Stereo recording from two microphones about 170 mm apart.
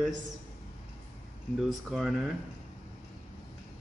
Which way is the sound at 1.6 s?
Centre (ahead or behind).